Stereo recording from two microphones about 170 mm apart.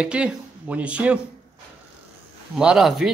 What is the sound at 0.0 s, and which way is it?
Speech, 5° right (ahead or behind).